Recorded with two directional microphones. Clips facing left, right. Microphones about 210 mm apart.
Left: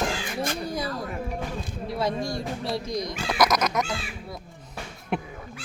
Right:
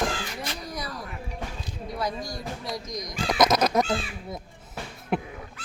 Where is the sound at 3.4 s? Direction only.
30° right (ahead or behind).